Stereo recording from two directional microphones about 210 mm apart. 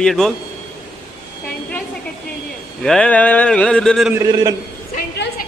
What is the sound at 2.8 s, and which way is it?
Speech, 5° left (ahead or behind).